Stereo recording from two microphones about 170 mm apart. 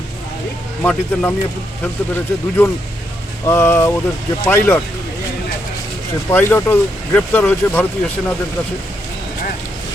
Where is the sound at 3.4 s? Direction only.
15° left (ahead or behind).